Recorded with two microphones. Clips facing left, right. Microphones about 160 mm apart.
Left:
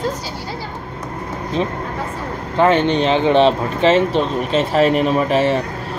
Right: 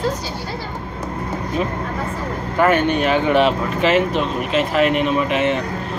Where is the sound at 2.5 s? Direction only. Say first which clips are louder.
Left 2 dB; 20° left (ahead or behind).